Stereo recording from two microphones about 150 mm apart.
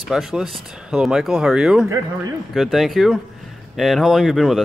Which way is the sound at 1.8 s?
20° right (ahead or behind).